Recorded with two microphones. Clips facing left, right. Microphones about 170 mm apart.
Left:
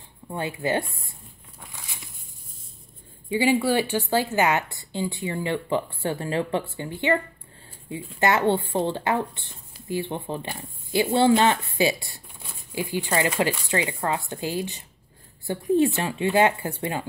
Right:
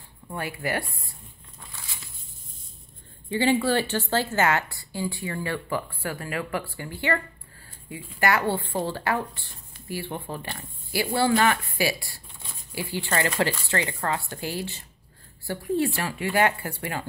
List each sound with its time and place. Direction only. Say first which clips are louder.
0.3 s speech: left 4 dB; 20° left (ahead or behind)
1.6 s a sound: left 1 dB; 15° left (ahead or behind)
3.3 s speech: left 1 dB; 10° left (ahead or behind)